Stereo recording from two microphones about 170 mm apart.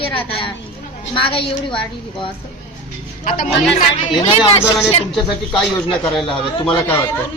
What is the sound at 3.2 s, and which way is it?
Speech, 55° left (ahead or behind).